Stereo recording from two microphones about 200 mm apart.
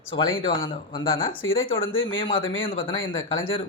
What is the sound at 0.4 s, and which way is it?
Speech, 20° left (ahead or behind).